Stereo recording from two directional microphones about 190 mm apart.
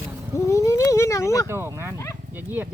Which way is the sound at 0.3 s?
15° left (ahead or behind).